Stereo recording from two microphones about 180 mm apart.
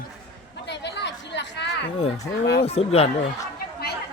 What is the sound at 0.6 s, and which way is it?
Chatter, 75° left (ahead or behind).